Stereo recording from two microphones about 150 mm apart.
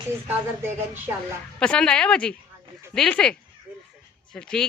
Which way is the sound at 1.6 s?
5° left (ahead or behind).